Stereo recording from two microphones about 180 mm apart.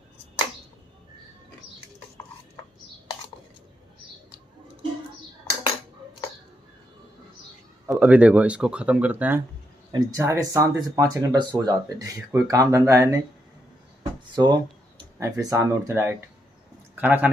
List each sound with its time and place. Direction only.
7.9 s speech: 10° right (ahead or behind)
14.3 s speech: 25° right (ahead or behind)